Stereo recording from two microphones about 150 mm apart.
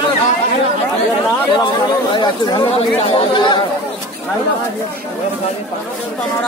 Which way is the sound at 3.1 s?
30° left (ahead or behind).